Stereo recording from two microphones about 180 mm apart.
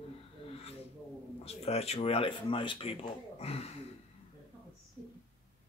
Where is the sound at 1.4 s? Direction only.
35° left (ahead or behind).